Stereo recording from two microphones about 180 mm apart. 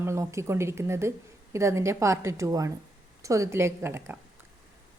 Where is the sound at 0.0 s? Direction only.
15° right (ahead or behind).